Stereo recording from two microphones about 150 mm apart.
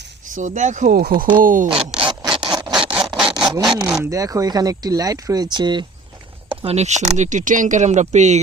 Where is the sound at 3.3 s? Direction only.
30° right (ahead or behind).